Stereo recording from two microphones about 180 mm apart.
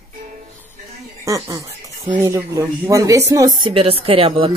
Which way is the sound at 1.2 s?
15° right (ahead or behind).